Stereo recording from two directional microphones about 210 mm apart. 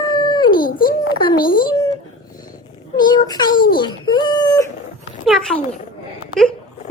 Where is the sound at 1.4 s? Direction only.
40° left (ahead or behind).